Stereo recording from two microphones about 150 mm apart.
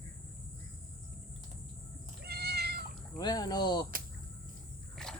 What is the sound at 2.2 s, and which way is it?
Cat, 90° right.